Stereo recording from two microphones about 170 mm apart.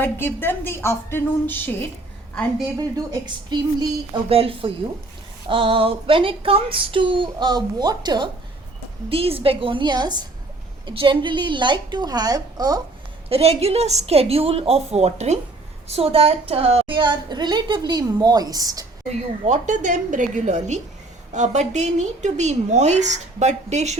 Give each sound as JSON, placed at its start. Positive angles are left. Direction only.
{"t": 0.0, "sound": "a woman's voice", "side_deg": 10}
{"t": 2.9, "sound": "a woman's voice", "side_deg": -25}
{"t": 13.3, "sound": "a woman's voice", "side_deg": -35}
{"t": 19.5, "sound": "a woman's voice", "side_deg": -45}